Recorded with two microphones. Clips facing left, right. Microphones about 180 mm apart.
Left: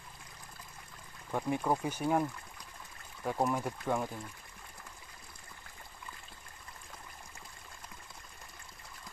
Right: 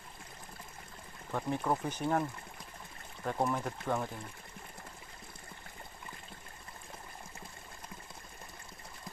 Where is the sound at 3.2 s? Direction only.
10° left (ahead or behind).